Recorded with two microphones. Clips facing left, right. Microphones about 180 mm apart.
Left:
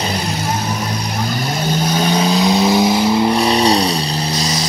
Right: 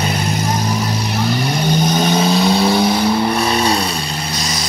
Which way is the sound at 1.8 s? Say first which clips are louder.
Even; 10° left (ahead or behind).